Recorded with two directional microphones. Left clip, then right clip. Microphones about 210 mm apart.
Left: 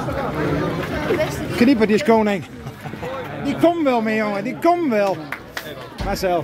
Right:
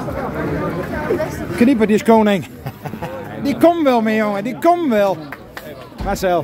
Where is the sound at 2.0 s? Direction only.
20° right (ahead or behind).